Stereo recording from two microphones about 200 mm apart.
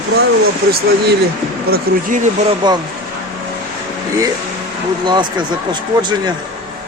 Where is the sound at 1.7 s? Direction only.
40° right (ahead or behind).